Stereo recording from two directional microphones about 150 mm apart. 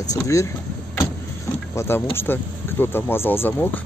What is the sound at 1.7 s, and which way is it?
Speech, 15° left (ahead or behind).